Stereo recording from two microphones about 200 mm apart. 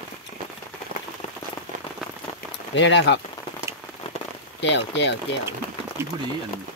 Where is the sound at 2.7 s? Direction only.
65° left (ahead or behind).